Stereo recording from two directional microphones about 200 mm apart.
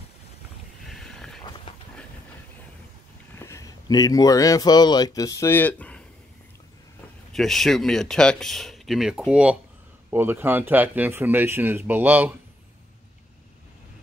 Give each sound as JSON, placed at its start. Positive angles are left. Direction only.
{"t": 0.8, "sound": "a sound", "side_deg": 0}
{"t": 3.3, "sound": "speech", "side_deg": 15}
{"t": 7.3, "sound": "speech", "side_deg": 0}